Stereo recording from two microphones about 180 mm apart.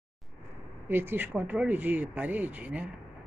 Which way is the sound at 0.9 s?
10° right (ahead or behind).